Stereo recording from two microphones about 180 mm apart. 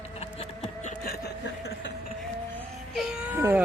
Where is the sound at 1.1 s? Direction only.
60° left (ahead or behind).